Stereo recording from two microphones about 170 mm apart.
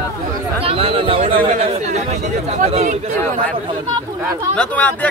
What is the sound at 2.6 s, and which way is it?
Speech, 45° right (ahead or behind).